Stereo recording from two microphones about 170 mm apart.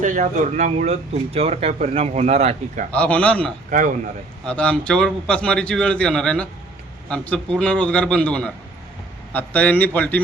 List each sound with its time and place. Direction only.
0.0 s speech: 50° right (ahead or behind)
2.9 s a man's voice: 5° left (ahead or behind)
3.7 s speech: 50° right (ahead or behind)
4.4 s a man's voice: 5° left (ahead or behind)